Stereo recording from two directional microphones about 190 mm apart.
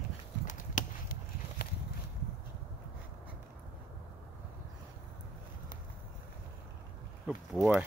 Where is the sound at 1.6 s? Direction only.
60° left (ahead or behind).